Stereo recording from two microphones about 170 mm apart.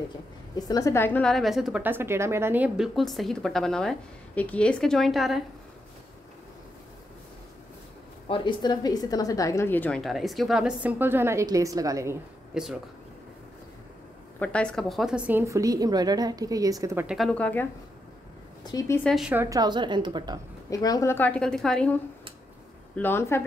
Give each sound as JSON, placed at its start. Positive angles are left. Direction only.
{"t": 0.7, "sound": "speech", "side_deg": 20}
{"t": 8.3, "sound": "speech", "side_deg": 25}
{"t": 12.5, "sound": "speech", "side_deg": -5}
{"t": 14.4, "sound": "a woman's voice", "side_deg": 5}
{"t": 17.0, "sound": "speech", "side_deg": -5}
{"t": 17.3, "sound": "a woman's voice", "side_deg": 10}
{"t": 18.6, "sound": "a woman's voice", "side_deg": 20}
{"t": 19.0, "sound": "speech", "side_deg": 0}
{"t": 19.3, "sound": "a woman's voice", "side_deg": -20}
{"t": 20.7, "sound": "a woman's voice", "side_deg": 20}